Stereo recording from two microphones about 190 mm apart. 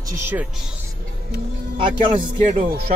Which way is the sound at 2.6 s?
50° right (ahead or behind).